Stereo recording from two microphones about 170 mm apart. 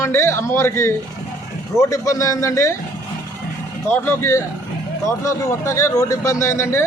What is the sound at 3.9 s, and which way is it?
Speech, 15° left (ahead or behind).